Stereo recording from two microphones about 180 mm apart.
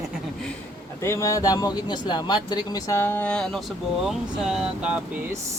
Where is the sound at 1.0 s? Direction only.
15° left (ahead or behind); by 5.4 s 5° right (ahead or behind).